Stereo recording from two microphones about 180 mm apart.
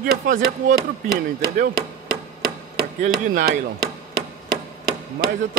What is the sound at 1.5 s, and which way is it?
Chopping, 55° right (ahead or behind).